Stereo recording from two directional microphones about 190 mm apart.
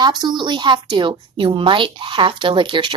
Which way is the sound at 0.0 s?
20° right (ahead or behind).